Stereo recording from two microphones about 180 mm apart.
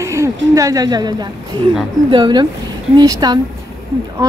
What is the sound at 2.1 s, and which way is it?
Speech, 25° right (ahead or behind).